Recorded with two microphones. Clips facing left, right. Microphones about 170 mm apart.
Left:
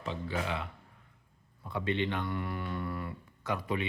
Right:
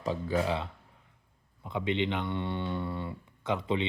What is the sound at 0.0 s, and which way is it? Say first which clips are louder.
Speech: right 6 dB; 40° right (ahead or behind).